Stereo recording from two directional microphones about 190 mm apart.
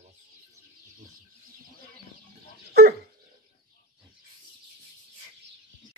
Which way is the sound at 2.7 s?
60° right (ahead or behind).